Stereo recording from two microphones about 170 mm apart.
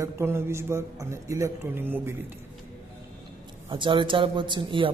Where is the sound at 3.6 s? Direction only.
30° right (ahead or behind).